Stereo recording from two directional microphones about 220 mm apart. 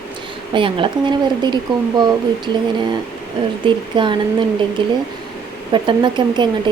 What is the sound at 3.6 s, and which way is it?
Speech, 20° right (ahead or behind).